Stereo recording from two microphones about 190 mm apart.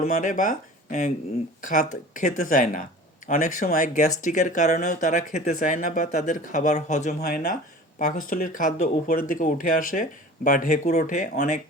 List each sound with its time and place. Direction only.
0.0 s speech: 40° left (ahead or behind)
7.2 s speech: 50° left (ahead or behind)